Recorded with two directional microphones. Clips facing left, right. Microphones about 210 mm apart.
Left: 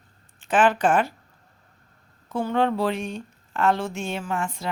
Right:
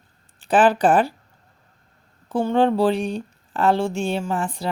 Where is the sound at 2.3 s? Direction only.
30° right (ahead or behind).